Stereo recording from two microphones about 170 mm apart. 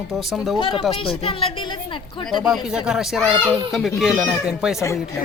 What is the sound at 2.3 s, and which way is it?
Speech, 5° right (ahead or behind).